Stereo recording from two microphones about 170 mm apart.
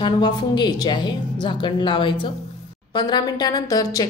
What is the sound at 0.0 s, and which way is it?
A woman's voice, 25° left (ahead or behind).